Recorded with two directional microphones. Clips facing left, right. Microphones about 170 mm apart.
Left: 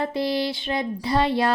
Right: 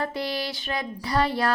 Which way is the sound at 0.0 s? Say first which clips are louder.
Left 5 dB; 25° left (ahead or behind).